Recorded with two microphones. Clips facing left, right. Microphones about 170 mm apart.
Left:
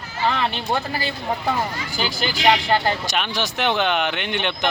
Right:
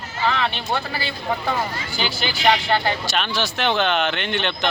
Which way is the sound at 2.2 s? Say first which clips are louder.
Left 1 dB; 40° left (ahead or behind).